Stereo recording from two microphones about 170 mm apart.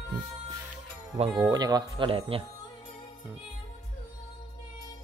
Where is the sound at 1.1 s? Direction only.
35° right (ahead or behind).